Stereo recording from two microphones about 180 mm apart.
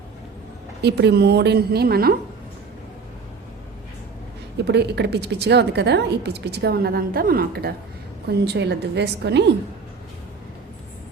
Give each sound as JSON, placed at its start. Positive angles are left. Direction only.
{"t": 0.8, "sound": "a woman's voice", "side_deg": -65}
{"t": 4.6, "sound": "a woman's voice", "side_deg": -70}